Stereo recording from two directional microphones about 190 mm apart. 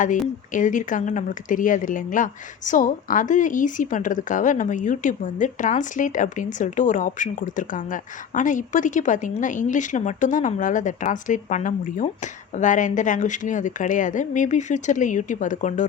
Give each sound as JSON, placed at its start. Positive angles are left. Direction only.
{"t": 0.0, "sound": "speech", "side_deg": 45}